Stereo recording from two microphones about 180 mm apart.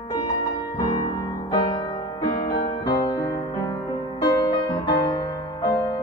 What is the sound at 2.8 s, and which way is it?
Music, 25° left (ahead or behind).